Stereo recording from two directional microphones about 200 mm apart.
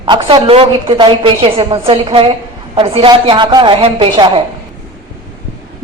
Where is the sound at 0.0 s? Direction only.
25° right (ahead or behind).